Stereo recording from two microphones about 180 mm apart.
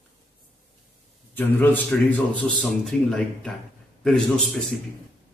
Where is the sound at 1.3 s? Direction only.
10° left (ahead or behind).